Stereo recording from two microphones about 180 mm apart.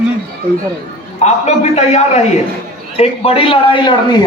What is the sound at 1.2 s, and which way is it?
A man's voice, 40° left (ahead or behind).